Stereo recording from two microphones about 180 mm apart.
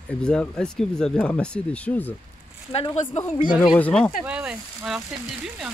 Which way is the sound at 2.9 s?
40° left (ahead or behind).